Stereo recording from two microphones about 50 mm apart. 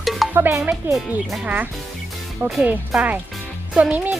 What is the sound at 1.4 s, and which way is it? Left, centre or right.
Speech, right.